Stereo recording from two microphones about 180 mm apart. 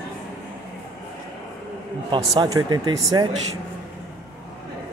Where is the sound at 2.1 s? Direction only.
20° right (ahead or behind).